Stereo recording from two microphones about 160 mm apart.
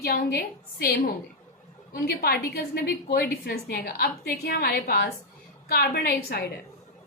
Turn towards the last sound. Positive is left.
turn(degrees=80)